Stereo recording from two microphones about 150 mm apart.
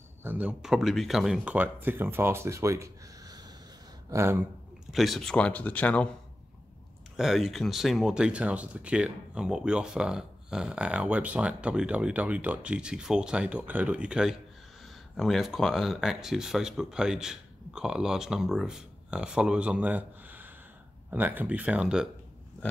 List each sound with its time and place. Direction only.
0.2 s speech: 10° right (ahead or behind)
4.9 s speech: centre (ahead or behind)
7.2 s speech: centre (ahead or behind)